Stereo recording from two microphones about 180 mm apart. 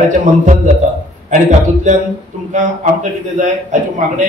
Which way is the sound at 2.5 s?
40° right (ahead or behind).